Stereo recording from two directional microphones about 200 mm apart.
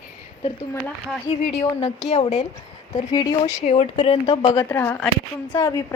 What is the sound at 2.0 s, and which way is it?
A woman's voice, 35° left (ahead or behind).